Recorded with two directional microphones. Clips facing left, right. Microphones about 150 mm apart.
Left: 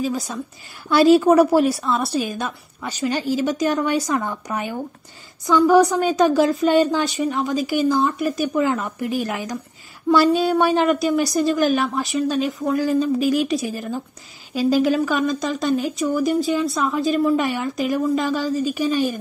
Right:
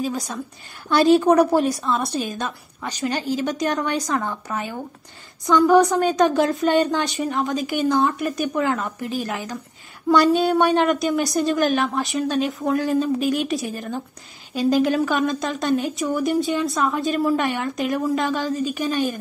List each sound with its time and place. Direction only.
0.8 s a woman's voice: 5° left (ahead or behind)
5.4 s a woman's voice: centre (ahead or behind)
10.0 s a woman's voice: centre (ahead or behind)